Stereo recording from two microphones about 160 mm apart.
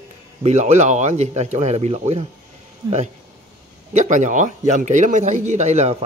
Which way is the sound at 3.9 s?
50° right (ahead or behind).